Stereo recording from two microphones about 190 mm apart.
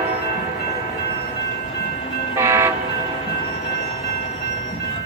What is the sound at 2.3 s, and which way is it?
Train, 15° right (ahead or behind).